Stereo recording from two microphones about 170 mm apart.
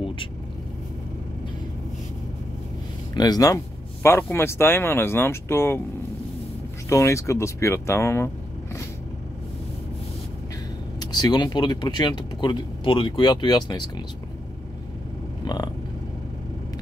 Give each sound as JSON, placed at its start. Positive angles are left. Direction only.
{"t": 3.2, "sound": "speech", "side_deg": 20}
{"t": 6.9, "sound": "speech", "side_deg": 15}
{"t": 11.0, "sound": "speech", "side_deg": 25}
{"t": 15.4, "sound": "a sound", "side_deg": 25}